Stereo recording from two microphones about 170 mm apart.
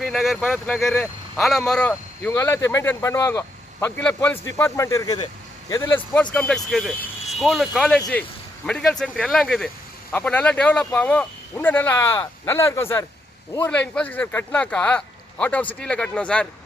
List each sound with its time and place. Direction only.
0.0 s speech: centre (ahead or behind); by 6.0 s 20° left (ahead or behind)
6.3 s speech: 5° left (ahead or behind)